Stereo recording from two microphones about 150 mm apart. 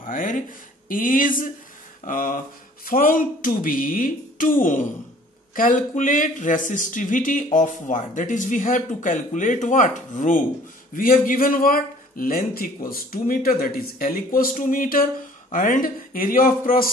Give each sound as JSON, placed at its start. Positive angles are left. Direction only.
{"t": 0.0, "sound": "a man's voice", "side_deg": 65}
{"t": 11.0, "sound": "a man's voice", "side_deg": 70}